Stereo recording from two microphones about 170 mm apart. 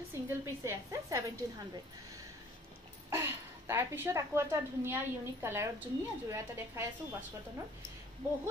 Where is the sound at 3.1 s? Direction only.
15° right (ahead or behind).